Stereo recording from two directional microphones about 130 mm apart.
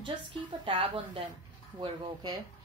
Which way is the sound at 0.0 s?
40° right (ahead or behind).